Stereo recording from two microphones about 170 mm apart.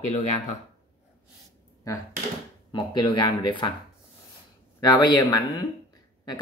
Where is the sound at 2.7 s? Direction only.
25° left (ahead or behind).